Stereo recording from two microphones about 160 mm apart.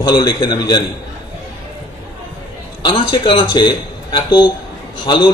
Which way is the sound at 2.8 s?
30° left (ahead or behind).